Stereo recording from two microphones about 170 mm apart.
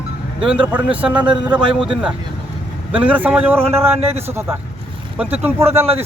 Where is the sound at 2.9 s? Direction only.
10° right (ahead or behind).